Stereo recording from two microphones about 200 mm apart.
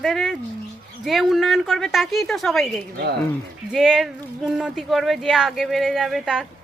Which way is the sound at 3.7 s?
Centre (ahead or behind).